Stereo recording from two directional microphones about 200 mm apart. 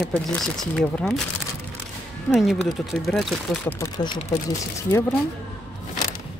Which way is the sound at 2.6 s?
Centre (ahead or behind).